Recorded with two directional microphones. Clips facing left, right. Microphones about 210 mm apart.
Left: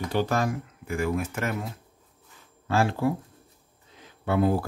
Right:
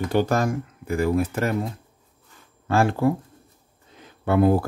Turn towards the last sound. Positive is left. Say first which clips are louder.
# right 5 dB
turn(degrees=-55)  # may be behind; listen again after turning